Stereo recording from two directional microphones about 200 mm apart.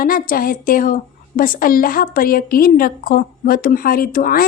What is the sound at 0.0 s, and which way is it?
A woman's voice, 45° left (ahead or behind).